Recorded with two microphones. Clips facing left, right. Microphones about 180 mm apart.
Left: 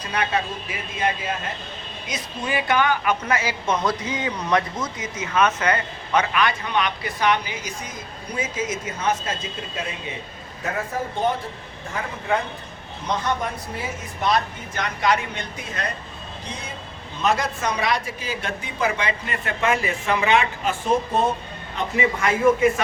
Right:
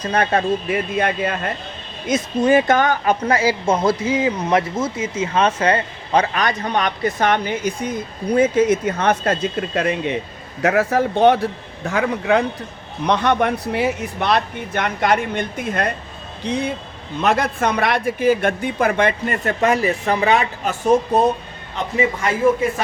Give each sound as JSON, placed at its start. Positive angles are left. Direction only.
{"t": 0.0, "sound": "speech", "side_deg": -45}
{"t": 2.0, "sound": "a man's voice", "side_deg": -45}
{"t": 13.1, "sound": "speech", "side_deg": -70}